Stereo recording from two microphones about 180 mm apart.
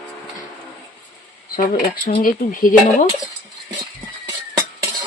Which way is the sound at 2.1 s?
50° left (ahead or behind).